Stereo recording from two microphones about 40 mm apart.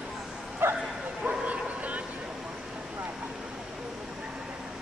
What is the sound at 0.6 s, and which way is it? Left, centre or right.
Bow-wow, right.